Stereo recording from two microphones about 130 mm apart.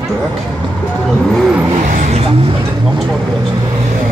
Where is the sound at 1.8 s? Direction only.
90° right.